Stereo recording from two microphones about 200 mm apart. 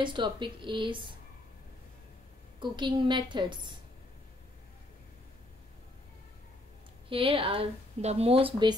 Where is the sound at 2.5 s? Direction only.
25° right (ahead or behind).